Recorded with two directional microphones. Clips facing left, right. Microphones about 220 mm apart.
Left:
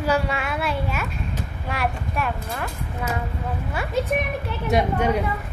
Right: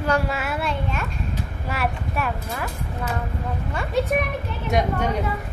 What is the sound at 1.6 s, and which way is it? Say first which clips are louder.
Speech: even; 5° right (ahead or behind).